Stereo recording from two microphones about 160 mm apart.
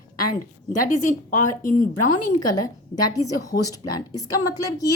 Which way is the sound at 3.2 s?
20° left (ahead or behind).